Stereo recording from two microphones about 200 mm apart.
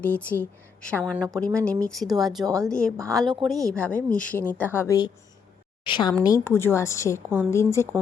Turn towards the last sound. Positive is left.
turn(degrees=15)  # may be behind; listen again after turning